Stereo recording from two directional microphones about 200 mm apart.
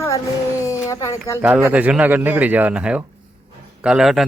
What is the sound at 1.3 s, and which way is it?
A man's voice, 10° right (ahead or behind).